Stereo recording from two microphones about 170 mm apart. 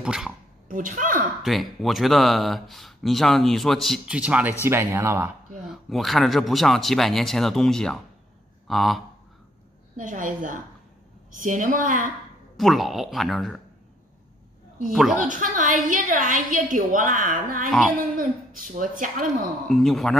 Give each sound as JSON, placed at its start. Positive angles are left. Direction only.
{"t": 0.0, "sound": "speech", "side_deg": -5}
{"t": 0.7, "sound": "a woman's voice", "side_deg": -50}
{"t": 1.4, "sound": "speech", "side_deg": 0}
{"t": 5.7, "sound": "speech", "side_deg": 0}
{"t": 9.9, "sound": "a woman's voice", "side_deg": -50}
{"t": 12.5, "sound": "speech", "side_deg": 0}
{"t": 14.9, "sound": "speech", "side_deg": 0}
{"t": 15.2, "sound": "a woman's voice", "side_deg": -50}
{"t": 17.6, "sound": "speech", "side_deg": 5}
{"t": 17.9, "sound": "a woman's voice", "side_deg": -55}
{"t": 19.7, "sound": "speech", "side_deg": 0}